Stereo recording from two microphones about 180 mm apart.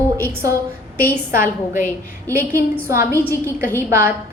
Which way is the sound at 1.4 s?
50° left (ahead or behind).